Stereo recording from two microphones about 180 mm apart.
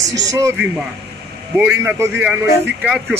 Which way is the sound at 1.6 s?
10° right (ahead or behind).